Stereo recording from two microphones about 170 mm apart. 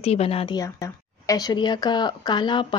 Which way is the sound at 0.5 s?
15° left (ahead or behind).